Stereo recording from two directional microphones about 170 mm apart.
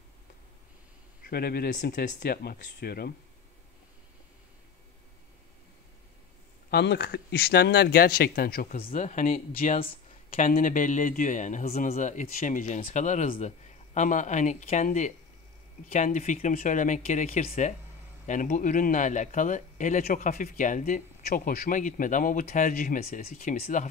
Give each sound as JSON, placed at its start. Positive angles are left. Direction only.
{"t": 1.2, "sound": "speech", "side_deg": 65}
{"t": 6.7, "sound": "speech", "side_deg": 75}
{"t": 8.7, "sound": "a man's voice", "side_deg": 40}